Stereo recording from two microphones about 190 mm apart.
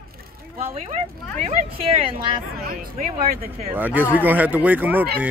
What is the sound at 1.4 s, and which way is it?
Speech, 30° right (ahead or behind).